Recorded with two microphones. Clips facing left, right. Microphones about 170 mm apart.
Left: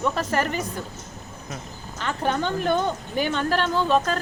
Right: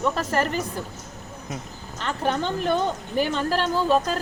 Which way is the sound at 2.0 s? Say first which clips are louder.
Even; centre (ahead or behind).